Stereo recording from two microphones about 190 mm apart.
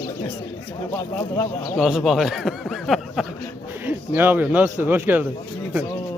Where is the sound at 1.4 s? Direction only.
10° left (ahead or behind).